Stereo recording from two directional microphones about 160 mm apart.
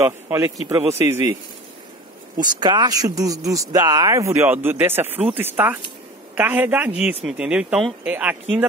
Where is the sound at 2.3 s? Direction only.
25° right (ahead or behind).